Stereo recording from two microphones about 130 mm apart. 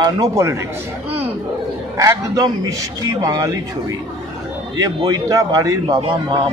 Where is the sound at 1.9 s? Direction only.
30° right (ahead or behind).